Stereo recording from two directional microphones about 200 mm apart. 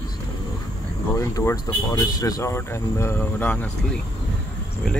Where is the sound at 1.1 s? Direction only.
15° left (ahead or behind).